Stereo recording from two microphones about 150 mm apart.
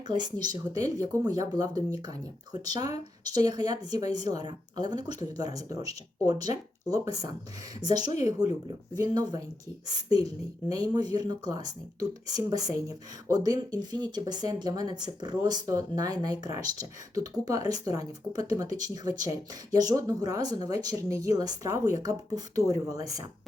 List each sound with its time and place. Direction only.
0.1 s speech: 30° right (ahead or behind)